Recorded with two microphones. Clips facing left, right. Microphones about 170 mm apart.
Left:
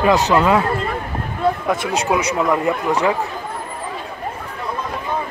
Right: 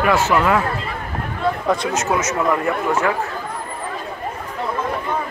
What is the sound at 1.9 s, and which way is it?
Speech, 15° left (ahead or behind).